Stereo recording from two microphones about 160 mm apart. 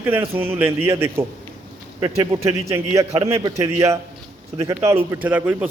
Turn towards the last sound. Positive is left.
turn(degrees=-10)  # may be behind; listen again after turning